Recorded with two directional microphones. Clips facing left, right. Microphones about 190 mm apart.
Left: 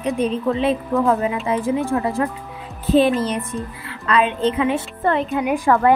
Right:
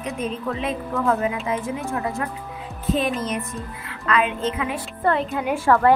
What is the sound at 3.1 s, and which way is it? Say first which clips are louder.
A woman's voice: left 5 dB; 35° left (ahead or behind).